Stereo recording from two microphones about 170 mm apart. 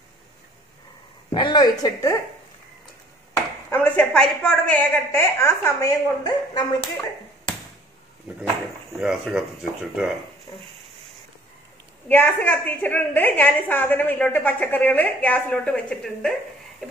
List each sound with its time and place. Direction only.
1.3 s speech: 25° left (ahead or behind)
3.7 s a woman's voice: 10° left (ahead or behind)
9.0 s speech: 5° right (ahead or behind)
12.1 s a woman's voice: 10° left (ahead or behind)